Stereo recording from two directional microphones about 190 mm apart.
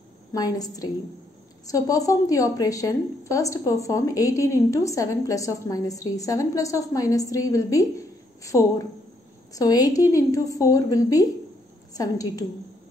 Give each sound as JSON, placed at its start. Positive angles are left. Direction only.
{"t": 0.3, "sound": "a woman's voice", "side_deg": 20}